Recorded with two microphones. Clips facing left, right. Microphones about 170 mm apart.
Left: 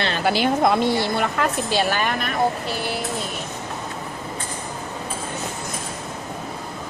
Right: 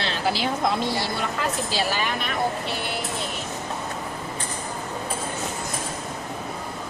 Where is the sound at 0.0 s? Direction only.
60° left (ahead or behind).